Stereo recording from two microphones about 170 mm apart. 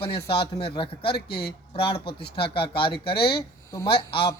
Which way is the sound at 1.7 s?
30° left (ahead or behind).